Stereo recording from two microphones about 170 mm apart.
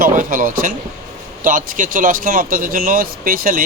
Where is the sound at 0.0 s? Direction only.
50° right (ahead or behind).